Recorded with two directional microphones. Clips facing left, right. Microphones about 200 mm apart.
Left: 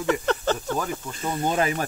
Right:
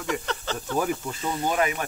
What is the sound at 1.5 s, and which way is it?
Speech, 35° left (ahead or behind).